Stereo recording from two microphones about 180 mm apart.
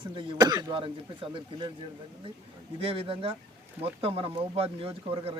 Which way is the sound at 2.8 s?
30° right (ahead or behind).